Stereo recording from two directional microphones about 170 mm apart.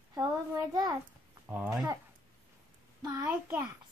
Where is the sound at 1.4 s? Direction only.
10° right (ahead or behind).